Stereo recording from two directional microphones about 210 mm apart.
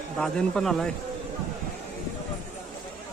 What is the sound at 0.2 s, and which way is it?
Speech, 5° left (ahead or behind).